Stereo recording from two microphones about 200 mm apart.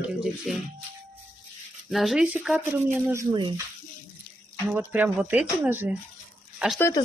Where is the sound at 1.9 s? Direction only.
Centre (ahead or behind); by 3.5 s 20° right (ahead or behind).